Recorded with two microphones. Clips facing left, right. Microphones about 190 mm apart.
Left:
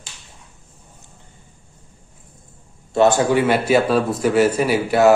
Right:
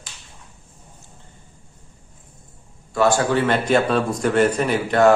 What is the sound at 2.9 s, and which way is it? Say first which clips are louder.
A man's voice: left 3 dB; 20° left (ahead or behind).